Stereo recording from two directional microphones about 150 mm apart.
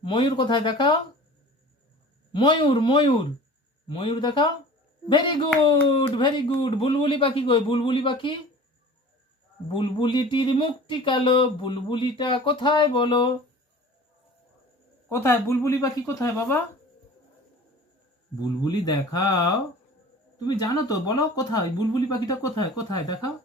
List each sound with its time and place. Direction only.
0.0 s speech: 35° left (ahead or behind)
2.3 s speech: 35° left (ahead or behind)
9.7 s speech: 35° left (ahead or behind)
15.1 s speech: 15° left (ahead or behind)
18.6 s speech: 25° left (ahead or behind)
20.6 s speech: 25° left (ahead or behind)